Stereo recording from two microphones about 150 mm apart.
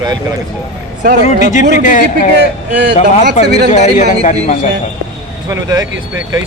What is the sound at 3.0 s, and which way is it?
A man's voice, 45° left (ahead or behind).